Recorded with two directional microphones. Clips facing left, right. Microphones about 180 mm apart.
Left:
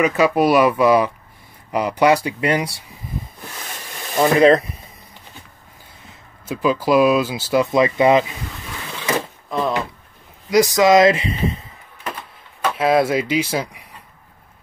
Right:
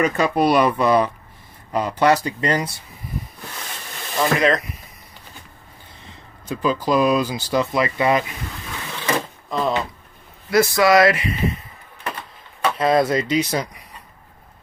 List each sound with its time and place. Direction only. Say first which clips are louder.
0.0 s speech: left 2 dB; 5° left (ahead or behind)
4.2 s speech: left 6 dB; 25° left (ahead or behind)
6.4 s speech: left 2 dB; 5° left (ahead or behind)
7.7 s speech: left 7 dB; 20° left (ahead or behind)
9.0 s a sound: left 1 dB; 5° left (ahead or behind)
10.5 s speech: left 2 dB; 15° left (ahead or behind)
12.7 s speech: left 1 dB; 5° left (ahead or behind)